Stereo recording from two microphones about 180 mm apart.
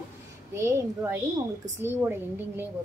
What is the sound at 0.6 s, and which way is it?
A woman's voice, 15° right (ahead or behind).